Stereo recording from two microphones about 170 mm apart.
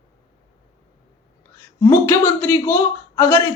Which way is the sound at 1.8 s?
15° left (ahead or behind).